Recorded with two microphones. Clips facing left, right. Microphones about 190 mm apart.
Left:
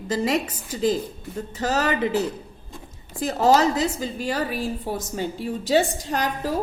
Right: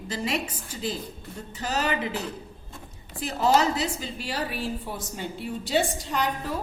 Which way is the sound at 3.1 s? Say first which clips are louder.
Left 4 dB; 40° left (ahead or behind).